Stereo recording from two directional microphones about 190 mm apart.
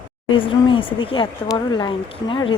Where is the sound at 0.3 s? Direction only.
25° left (ahead or behind).